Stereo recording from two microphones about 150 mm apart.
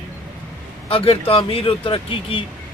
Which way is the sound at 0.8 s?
40° left (ahead or behind).